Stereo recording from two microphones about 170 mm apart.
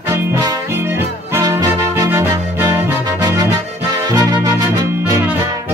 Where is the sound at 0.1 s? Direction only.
20° right (ahead or behind).